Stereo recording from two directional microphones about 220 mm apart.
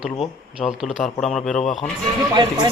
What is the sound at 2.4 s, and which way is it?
Speech, 20° right (ahead or behind).